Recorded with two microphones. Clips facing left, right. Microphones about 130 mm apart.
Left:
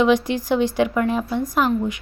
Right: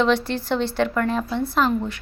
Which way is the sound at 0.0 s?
15° left (ahead or behind).